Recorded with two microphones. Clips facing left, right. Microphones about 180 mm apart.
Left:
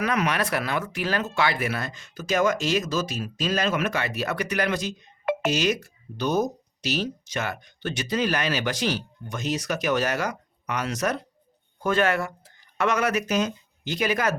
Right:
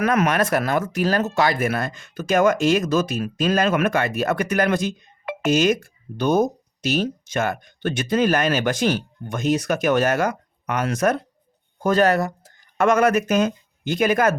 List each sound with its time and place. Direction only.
0.0 s speech: 50° right (ahead or behind)
11.8 s speech: 40° right (ahead or behind)